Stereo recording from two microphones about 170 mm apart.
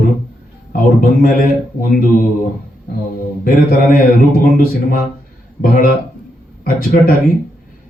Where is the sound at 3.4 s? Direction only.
55° left (ahead or behind).